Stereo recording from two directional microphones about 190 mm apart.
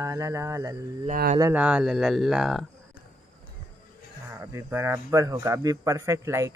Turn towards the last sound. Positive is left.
turn(degrees=-15)  # may be behind; listen again after turning